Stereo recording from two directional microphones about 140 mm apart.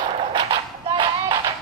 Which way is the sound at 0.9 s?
35° right (ahead or behind).